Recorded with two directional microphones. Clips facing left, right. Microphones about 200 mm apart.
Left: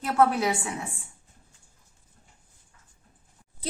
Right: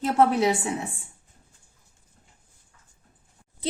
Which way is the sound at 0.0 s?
25° right (ahead or behind).